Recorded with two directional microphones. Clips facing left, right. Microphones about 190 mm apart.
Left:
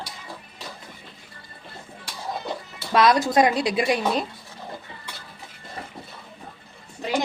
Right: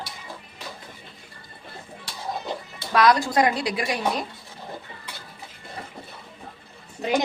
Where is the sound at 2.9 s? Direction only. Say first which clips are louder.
Left 1 dB; 20° left (ahead or behind).